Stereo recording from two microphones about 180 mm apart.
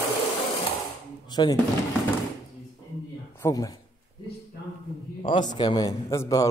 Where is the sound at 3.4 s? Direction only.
20° left (ahead or behind).